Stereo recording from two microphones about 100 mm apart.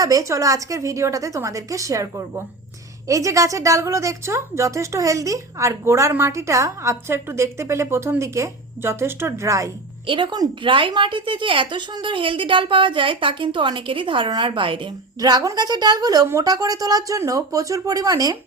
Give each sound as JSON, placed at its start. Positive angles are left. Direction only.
{"t": 0.0, "sound": "a woman's voice", "side_deg": -35}
{"t": 10.1, "sound": "a woman's voice", "side_deg": -55}
{"t": 10.7, "sound": "a woman's voice", "side_deg": -60}
{"t": 15.2, "sound": "a woman's voice", "side_deg": -40}